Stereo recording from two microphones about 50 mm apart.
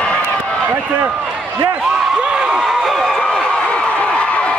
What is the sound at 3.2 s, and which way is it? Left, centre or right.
Run, left.